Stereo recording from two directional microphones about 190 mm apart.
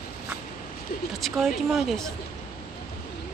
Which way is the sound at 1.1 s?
Centre (ahead or behind).